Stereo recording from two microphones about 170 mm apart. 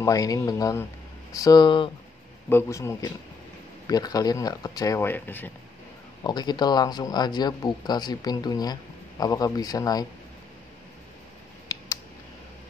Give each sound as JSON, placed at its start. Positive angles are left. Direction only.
{"t": 0.0, "sound": "speech", "side_deg": 20}
{"t": 2.5, "sound": "speech", "side_deg": 15}
{"t": 6.2, "sound": "speech", "side_deg": 25}
{"t": 11.7, "sound": "a sound", "side_deg": 20}